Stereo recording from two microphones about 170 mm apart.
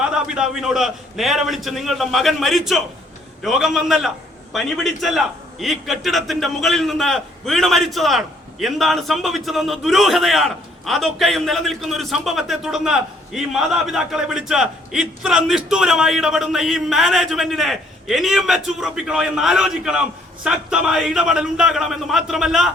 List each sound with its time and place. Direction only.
0.0 s a man's voice: 5° right (ahead or behind)